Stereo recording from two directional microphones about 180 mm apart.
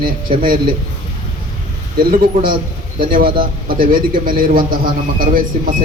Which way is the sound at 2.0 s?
55° right (ahead or behind).